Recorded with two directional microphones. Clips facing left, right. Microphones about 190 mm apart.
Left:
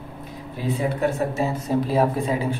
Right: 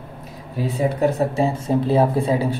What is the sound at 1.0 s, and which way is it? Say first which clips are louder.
Speech: right 6 dB; 30° right (ahead or behind).